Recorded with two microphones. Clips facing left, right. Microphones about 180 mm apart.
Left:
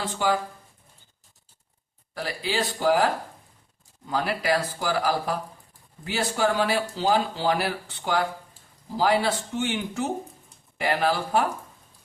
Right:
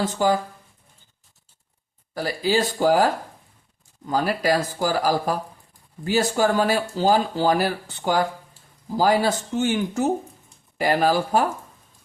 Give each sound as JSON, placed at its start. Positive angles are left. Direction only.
{"t": 0.0, "sound": "speech", "side_deg": -40}
{"t": 2.1, "sound": "speech", "side_deg": -40}